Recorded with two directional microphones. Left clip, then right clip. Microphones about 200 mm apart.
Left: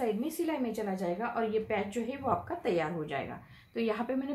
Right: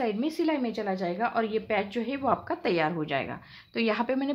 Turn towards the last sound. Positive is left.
turn(degrees=-45)  # may be behind; listen again after turning